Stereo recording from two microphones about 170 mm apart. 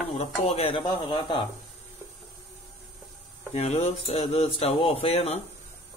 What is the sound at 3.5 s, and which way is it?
Speech, 40° left (ahead or behind).